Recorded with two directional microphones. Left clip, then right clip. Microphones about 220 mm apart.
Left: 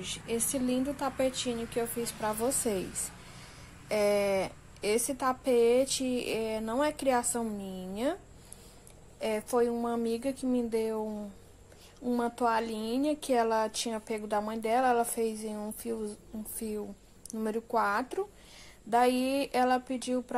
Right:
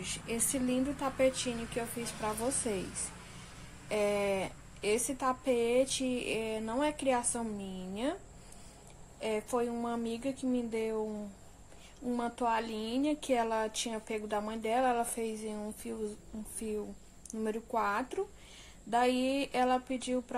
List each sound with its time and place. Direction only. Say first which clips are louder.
0.0 s speech: left 3 dB; 10° left (ahead or behind)
3.9 s speech: left 4 dB; 20° left (ahead or behind)
9.2 s speech: left 4 dB; 20° left (ahead or behind)
12.1 s speech: left 4 dB; 20° left (ahead or behind)